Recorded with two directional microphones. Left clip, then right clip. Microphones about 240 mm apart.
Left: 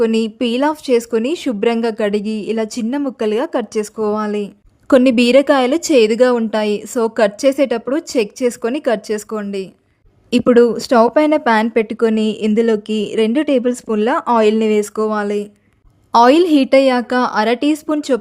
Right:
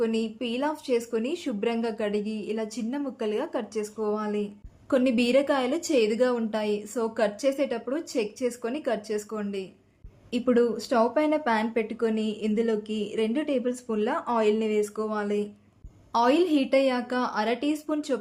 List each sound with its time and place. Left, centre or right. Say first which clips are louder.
0.0 s a woman's voice: left 12 dB; left